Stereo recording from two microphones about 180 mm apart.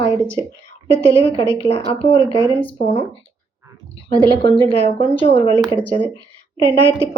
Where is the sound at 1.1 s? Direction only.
30° left (ahead or behind).